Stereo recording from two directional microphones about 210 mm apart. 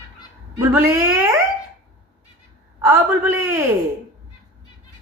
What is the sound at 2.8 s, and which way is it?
Speech, 10° right (ahead or behind).